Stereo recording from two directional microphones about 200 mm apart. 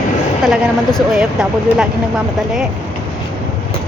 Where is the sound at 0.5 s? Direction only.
Centre (ahead or behind).